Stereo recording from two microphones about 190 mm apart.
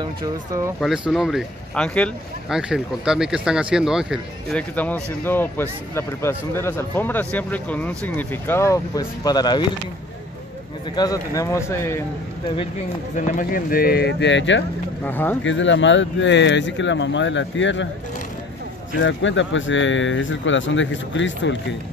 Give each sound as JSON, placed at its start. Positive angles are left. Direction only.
{"t": 0.0, "sound": "speech", "side_deg": -20}
{"t": 0.7, "sound": "speech", "side_deg": 0}
{"t": 11.0, "sound": "speech", "side_deg": 20}
{"t": 13.1, "sound": "speech", "side_deg": 45}
{"t": 15.0, "sound": "speech", "side_deg": 10}
{"t": 15.4, "sound": "speech", "side_deg": 75}
{"t": 18.9, "sound": "speech", "side_deg": 75}